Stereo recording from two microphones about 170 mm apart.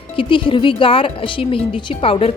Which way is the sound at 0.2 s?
30° left (ahead or behind).